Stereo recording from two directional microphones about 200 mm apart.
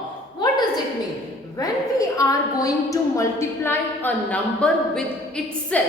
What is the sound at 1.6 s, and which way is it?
A woman's voice, 15° left (ahead or behind).